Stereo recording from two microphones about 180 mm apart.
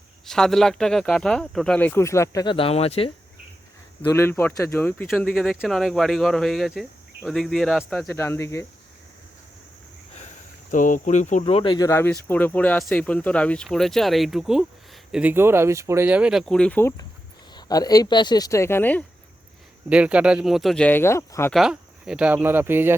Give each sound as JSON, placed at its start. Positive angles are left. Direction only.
{"t": 0.3, "sound": "speech", "side_deg": 5}
{"t": 4.1, "sound": "speech", "side_deg": 15}
{"t": 8.1, "sound": "speech", "side_deg": 15}
{"t": 10.7, "sound": "speech", "side_deg": 45}
{"t": 17.5, "sound": "speech", "side_deg": 20}
{"t": 19.9, "sound": "speech", "side_deg": -5}
{"t": 21.5, "sound": "speech", "side_deg": -5}